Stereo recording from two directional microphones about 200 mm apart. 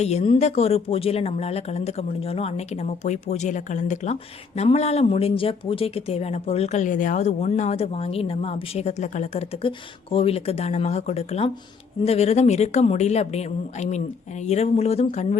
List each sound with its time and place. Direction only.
0.0 s speech: 30° left (ahead or behind)